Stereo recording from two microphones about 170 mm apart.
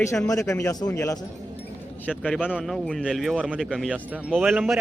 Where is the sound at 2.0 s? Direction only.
10° left (ahead or behind).